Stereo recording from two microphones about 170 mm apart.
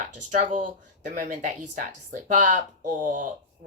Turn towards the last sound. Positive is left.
turn(degrees=-50)  # may be behind; listen again after turning